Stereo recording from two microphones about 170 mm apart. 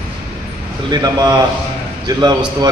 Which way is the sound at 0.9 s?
25° right (ahead or behind).